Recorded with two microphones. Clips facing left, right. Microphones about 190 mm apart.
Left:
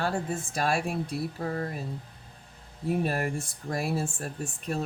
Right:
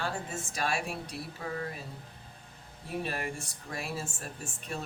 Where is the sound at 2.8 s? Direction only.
45° left (ahead or behind).